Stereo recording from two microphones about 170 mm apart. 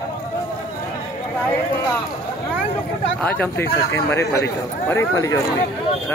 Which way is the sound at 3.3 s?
10° left (ahead or behind).